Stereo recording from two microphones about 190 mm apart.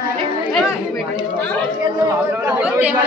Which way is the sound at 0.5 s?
5° left (ahead or behind).